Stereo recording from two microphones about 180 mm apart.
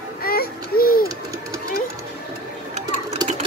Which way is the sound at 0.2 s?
55° left (ahead or behind).